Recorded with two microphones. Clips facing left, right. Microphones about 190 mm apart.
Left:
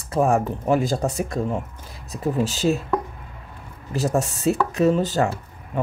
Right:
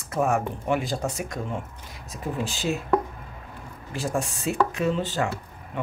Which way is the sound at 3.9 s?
40° left (ahead or behind).